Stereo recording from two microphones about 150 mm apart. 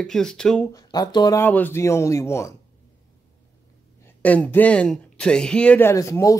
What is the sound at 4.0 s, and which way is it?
Speech, 10° left (ahead or behind).